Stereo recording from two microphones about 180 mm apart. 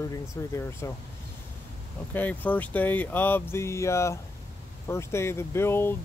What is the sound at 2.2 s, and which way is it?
Speech, 10° left (ahead or behind).